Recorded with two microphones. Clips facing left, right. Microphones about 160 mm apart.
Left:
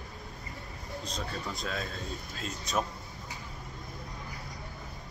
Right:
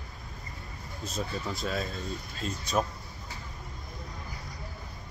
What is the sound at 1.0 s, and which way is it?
A man's voice, 5° right (ahead or behind).